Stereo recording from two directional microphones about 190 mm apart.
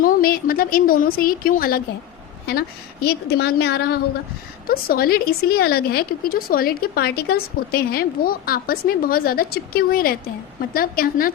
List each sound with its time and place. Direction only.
0.0 s a woman's voice: 50° left (ahead or behind)